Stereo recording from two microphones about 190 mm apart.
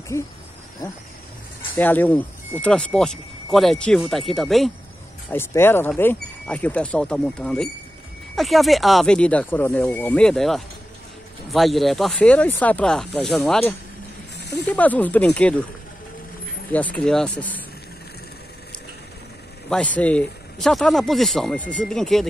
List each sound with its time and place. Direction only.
1.8 s a man's voice: 10° left (ahead or behind)
5.3 s a man's voice: 10° left (ahead or behind)
14.3 s snake: 60° left (ahead or behind)
14.7 s speech: 10° left (ahead or behind)
16.7 s speech: 5° left (ahead or behind)
19.7 s a man's voice: 5° left (ahead or behind)